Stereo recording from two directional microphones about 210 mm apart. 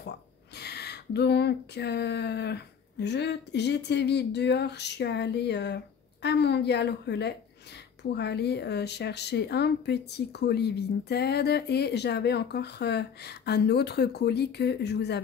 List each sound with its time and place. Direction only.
0.6 s speech: 50° left (ahead or behind)